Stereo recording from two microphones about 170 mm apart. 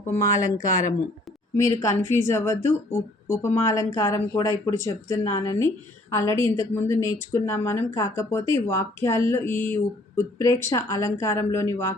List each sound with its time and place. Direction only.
0.3 s speech: 20° left (ahead or behind)